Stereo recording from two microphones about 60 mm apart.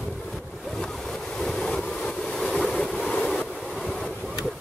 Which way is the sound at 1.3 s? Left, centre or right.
Centre.